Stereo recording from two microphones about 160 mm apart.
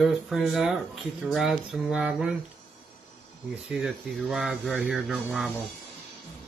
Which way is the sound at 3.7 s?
5° right (ahead or behind).